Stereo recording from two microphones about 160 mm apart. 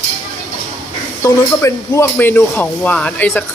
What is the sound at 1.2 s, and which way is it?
Speech, 20° left (ahead or behind).